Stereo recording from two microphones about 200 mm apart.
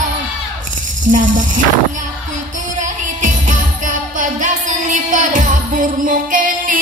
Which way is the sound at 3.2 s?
40° right (ahead or behind).